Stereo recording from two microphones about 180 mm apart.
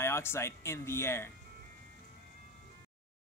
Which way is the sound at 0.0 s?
15° left (ahead or behind).